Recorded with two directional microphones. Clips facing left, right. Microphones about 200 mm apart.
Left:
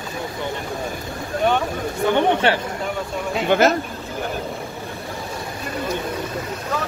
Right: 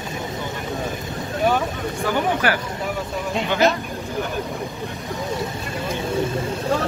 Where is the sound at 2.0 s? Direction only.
25° left (ahead or behind).